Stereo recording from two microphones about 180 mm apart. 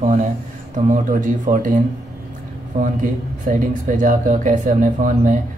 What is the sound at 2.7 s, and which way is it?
Speech, 45° right (ahead or behind).